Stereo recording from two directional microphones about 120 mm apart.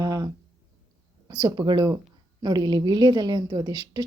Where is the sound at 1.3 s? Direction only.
35° right (ahead or behind).